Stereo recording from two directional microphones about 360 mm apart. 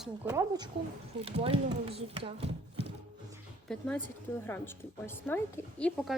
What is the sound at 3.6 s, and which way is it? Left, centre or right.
A woman's voice, centre.